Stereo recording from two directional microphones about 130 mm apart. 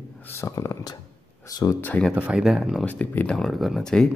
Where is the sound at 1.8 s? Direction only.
10° left (ahead or behind).